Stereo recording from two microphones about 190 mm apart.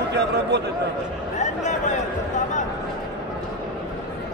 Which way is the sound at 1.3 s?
40° left (ahead or behind).